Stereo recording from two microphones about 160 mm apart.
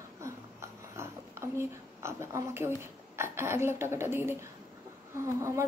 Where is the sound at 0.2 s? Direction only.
15° right (ahead or behind).